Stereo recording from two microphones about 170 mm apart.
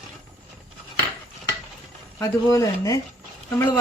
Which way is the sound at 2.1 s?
20° left (ahead or behind).